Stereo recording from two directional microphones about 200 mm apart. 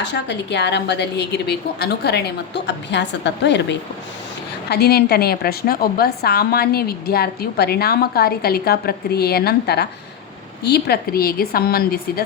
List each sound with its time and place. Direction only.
0.0 s a woman's voice: 60° left (ahead or behind)